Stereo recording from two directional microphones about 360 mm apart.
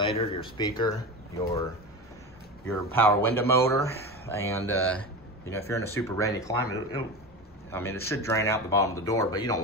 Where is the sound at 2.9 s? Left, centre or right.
Centre.